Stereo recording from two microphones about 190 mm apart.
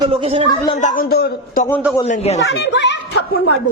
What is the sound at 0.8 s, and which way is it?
Speech, 45° left (ahead or behind).